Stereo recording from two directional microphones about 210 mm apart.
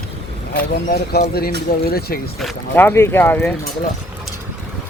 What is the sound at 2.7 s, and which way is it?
Speech, 10° left (ahead or behind).